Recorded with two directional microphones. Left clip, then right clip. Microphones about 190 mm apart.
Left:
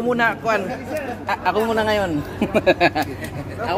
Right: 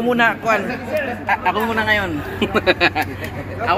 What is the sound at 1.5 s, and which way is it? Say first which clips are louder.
Speech: left 1 dB; 40° left (ahead or behind).